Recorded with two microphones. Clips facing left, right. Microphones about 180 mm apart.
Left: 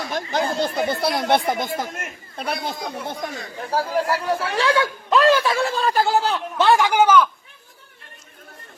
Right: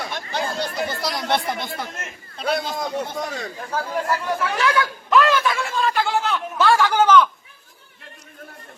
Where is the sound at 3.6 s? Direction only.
35° left (ahead or behind).